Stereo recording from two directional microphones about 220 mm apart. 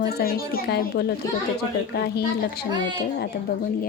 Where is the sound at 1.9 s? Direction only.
45° left (ahead or behind).